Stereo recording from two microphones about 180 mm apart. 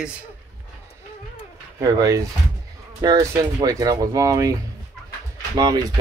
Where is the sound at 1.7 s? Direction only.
20° right (ahead or behind).